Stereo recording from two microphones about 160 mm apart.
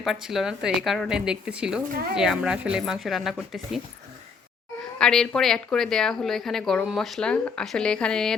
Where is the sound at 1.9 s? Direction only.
65° right (ahead or behind).